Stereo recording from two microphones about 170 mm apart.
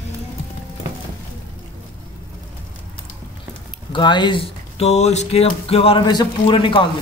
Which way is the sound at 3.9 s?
25° left (ahead or behind).